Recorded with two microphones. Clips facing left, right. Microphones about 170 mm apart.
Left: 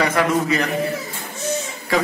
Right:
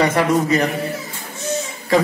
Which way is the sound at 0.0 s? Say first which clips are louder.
Right 2 dB; 30° right (ahead or behind).